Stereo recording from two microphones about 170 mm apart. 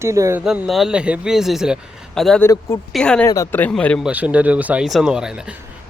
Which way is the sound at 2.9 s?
5° left (ahead or behind).